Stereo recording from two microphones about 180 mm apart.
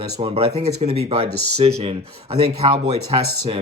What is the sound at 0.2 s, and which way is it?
Speech, 35° right (ahead or behind).